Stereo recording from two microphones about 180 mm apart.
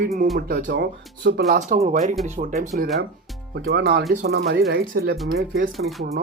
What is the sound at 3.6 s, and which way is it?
Speech, 65° right (ahead or behind).